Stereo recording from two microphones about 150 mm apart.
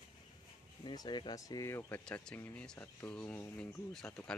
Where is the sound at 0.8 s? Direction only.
30° left (ahead or behind).